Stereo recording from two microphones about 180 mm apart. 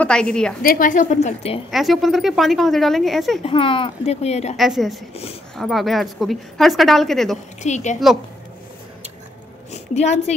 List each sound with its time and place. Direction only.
0.0 s a woman's voice: 5° left (ahead or behind)
0.6 s a woman's voice: 50° left (ahead or behind)
1.7 s a woman's voice: centre (ahead or behind)
3.4 s speech: 30° left (ahead or behind)
4.6 s a woman's voice: centre (ahead or behind)
5.1 s speech: 35° left (ahead or behind)
5.6 s a woman's voice: centre (ahead or behind)
7.6 s speech: 40° left (ahead or behind)
9.7 s a woman's voice: 40° left (ahead or behind)